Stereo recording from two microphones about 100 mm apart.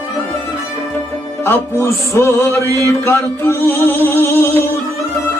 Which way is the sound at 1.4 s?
25° left (ahead or behind).